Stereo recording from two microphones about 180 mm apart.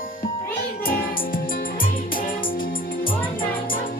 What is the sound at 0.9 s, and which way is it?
Music, 50° left (ahead or behind).